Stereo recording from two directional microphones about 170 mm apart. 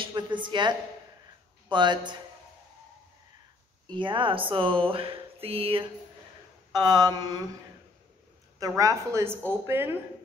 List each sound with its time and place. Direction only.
0.0 s a sound: 30° right (ahead or behind)
1.7 s mantra: 25° right (ahead or behind)
3.8 s speech: 30° right (ahead or behind)
6.7 s mantra: 25° right (ahead or behind)
8.5 s a woman's voice: 20° right (ahead or behind)